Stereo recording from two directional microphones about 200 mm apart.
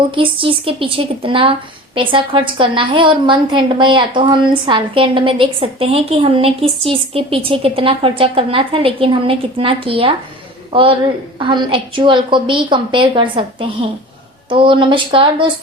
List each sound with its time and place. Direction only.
0.1 s a woman's voice: 25° right (ahead or behind)